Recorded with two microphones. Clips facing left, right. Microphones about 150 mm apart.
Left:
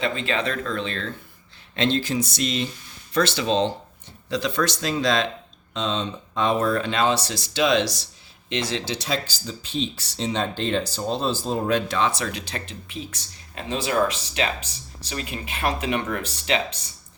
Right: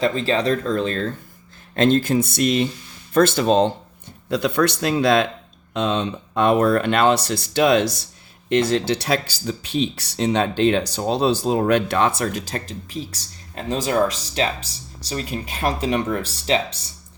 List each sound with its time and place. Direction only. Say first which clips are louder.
0.0 s speech: right 5 dB; 35° right (ahead or behind)